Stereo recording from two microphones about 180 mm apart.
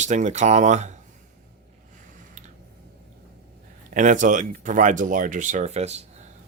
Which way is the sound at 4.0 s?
45° right (ahead or behind).